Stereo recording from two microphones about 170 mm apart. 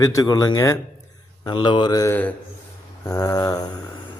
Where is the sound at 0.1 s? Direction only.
20° left (ahead or behind).